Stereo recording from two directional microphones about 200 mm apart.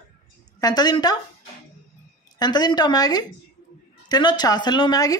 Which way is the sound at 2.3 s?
20° left (ahead or behind).